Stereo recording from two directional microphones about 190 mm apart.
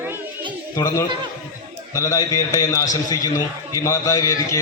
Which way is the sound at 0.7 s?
15° left (ahead or behind).